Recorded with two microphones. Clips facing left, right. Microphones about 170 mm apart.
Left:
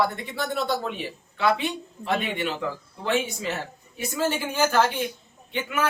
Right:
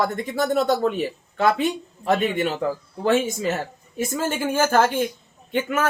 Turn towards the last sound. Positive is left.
turn(degrees=-45)  # may be behind; listen again after turning